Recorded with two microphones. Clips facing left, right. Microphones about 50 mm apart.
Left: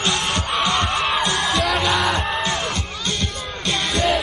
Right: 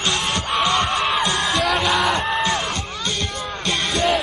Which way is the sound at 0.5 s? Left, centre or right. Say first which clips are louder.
Right 2 dB; centre.